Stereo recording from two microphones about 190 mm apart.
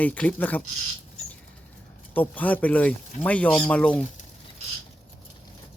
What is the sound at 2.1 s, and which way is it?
Speech, 10° left (ahead or behind).